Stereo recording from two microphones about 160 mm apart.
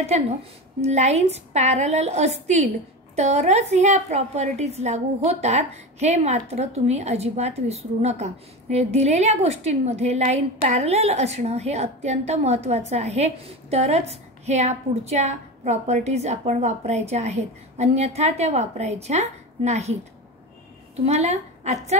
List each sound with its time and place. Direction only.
0.7 s a woman's voice: 45° right (ahead or behind)